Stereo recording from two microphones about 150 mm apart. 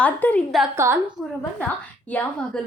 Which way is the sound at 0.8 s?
20° right (ahead or behind).